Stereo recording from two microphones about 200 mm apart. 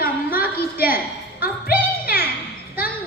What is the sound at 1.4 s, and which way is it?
Music, 50° left (ahead or behind).